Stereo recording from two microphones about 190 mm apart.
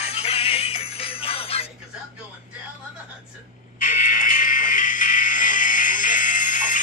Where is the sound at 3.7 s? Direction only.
45° left (ahead or behind).